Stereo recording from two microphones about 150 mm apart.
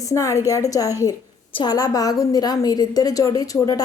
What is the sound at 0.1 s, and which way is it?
A woman's voice, 20° left (ahead or behind).